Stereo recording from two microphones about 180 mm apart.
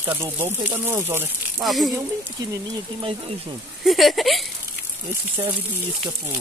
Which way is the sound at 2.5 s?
30° right (ahead or behind).